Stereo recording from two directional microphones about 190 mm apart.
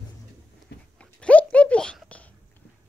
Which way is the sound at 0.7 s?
60° left (ahead or behind).